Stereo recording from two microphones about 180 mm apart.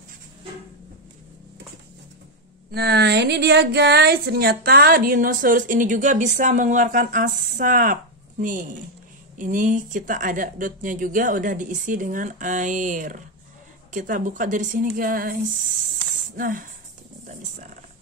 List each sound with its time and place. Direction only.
2.7 s speech: 65° right (ahead or behind)
16.3 s speech: 50° right (ahead or behind)